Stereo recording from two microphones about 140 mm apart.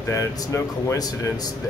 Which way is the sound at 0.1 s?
20° left (ahead or behind).